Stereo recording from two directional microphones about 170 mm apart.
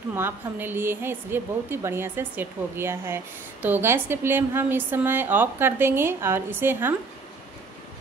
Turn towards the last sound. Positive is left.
turn(degrees=-15)  # may be behind; listen again after turning